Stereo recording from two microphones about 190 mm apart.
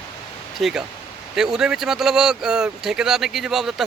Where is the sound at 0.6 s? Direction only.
Centre (ahead or behind).